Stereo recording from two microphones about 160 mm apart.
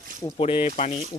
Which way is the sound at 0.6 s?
45° left (ahead or behind).